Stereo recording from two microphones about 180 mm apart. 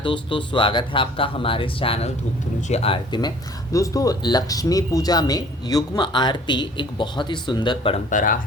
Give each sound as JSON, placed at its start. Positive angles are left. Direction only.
{"t": 0.0, "sound": "speech", "side_deg": 30}
{"t": 8.1, "sound": "speech", "side_deg": 50}